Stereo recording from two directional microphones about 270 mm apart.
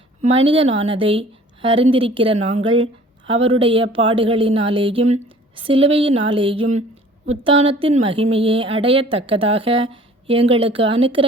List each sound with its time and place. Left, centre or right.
0.2 s a woman's voice: right